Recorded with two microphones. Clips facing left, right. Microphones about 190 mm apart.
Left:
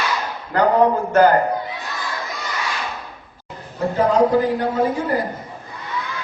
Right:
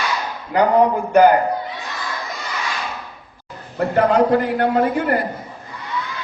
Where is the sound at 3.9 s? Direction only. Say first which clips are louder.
Right 1 dB; 65° right (ahead or behind).